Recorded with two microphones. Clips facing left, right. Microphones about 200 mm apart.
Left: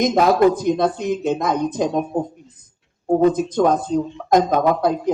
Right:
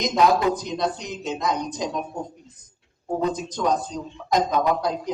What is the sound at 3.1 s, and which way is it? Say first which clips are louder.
Speech: left 9 dB; 55° left (ahead or behind).